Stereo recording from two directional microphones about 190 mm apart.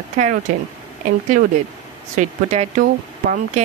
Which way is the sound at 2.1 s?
35° right (ahead or behind).